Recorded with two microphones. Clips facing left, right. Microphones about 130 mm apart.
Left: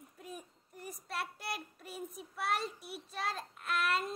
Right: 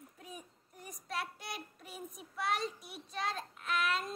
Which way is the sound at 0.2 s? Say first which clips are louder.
Left 3 dB; centre (ahead or behind).